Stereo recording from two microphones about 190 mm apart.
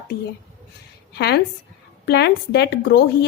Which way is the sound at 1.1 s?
60° left (ahead or behind).